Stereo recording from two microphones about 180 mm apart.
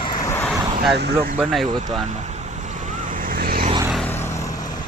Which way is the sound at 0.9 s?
60° right (ahead or behind).